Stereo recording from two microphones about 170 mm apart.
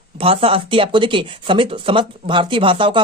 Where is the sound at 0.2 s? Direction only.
35° right (ahead or behind).